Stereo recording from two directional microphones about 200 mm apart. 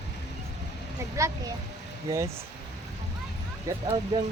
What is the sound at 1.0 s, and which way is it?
Speech, 15° right (ahead or behind).